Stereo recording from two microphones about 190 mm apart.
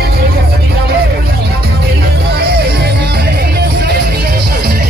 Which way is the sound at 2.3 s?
60° right (ahead or behind).